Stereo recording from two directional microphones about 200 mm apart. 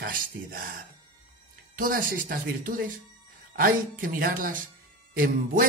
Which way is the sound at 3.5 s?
45° right (ahead or behind).